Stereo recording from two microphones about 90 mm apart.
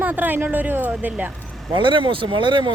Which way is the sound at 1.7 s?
65° right (ahead or behind).